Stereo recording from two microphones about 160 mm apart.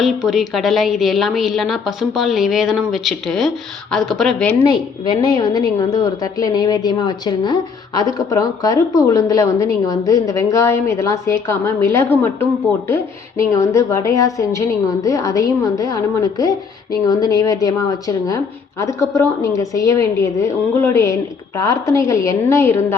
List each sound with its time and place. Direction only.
0.0 s a woman's voice: 5° right (ahead or behind)
4.6 s a woman's voice: 25° left (ahead or behind)